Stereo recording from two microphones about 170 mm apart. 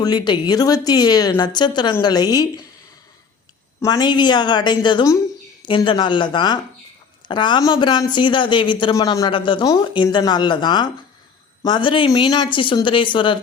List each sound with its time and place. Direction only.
0.0 s a woman's voice: 25° left (ahead or behind)
3.8 s a woman's voice: 20° left (ahead or behind)